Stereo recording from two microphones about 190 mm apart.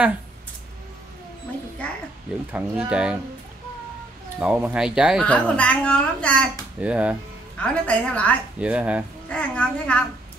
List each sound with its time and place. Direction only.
2.5 s a woman's voice: 5° right (ahead or behind)
4.4 s a woman's voice: 5° right (ahead or behind)
6.8 s speech: 5° right (ahead or behind)
7.6 s a woman's voice: 5° left (ahead or behind)
8.5 s speech: 5° right (ahead or behind)
9.3 s a woman's voice: 5° left (ahead or behind)